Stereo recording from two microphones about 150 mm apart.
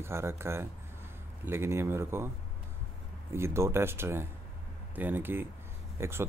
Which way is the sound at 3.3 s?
15° right (ahead or behind).